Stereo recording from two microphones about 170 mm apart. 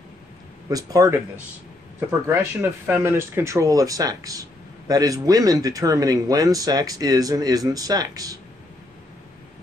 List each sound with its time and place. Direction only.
0.7 s speech: 20° right (ahead or behind)